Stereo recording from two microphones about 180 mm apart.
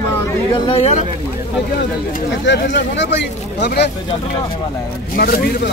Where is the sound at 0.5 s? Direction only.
30° left (ahead or behind).